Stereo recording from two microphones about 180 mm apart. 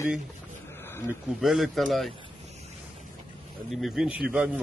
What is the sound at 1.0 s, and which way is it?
Speech, centre (ahead or behind).